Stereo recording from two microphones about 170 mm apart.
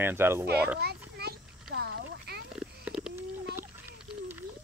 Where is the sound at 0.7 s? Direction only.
70° right (ahead or behind).